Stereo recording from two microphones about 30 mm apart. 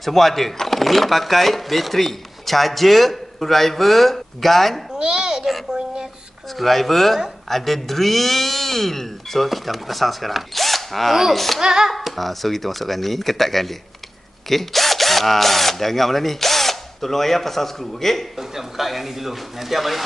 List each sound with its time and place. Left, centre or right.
0.0 s speech: centre
4.9 s babbling: right
6.6 s speech: centre
11.6 s music: right
11.9 s speech: centre
18.8 s speech: centre